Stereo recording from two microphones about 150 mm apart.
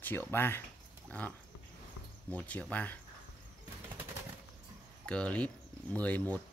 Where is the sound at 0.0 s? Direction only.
15° left (ahead or behind).